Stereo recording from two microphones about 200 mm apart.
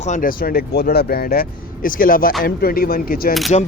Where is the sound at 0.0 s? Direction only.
40° left (ahead or behind).